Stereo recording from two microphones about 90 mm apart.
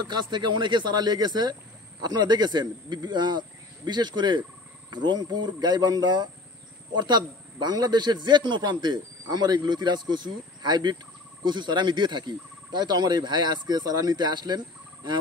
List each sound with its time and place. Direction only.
0.1 s speech: 60° right (ahead or behind)